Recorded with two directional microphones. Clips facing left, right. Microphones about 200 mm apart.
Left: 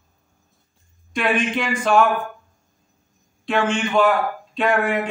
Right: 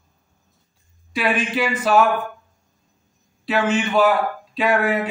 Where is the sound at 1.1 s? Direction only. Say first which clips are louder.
Even; 5° right (ahead or behind).